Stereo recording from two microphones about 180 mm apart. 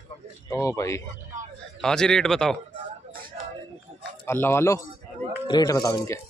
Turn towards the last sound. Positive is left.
turn(degrees=15)  # may be behind; listen again after turning